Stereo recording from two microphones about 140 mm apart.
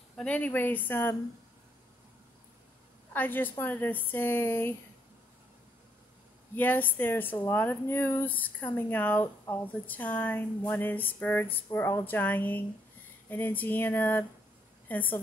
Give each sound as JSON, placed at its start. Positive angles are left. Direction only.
{"t": 0.1, "sound": "speech", "side_deg": 10}
{"t": 3.1, "sound": "speech", "side_deg": 15}
{"t": 6.5, "sound": "a woman's voice", "side_deg": 15}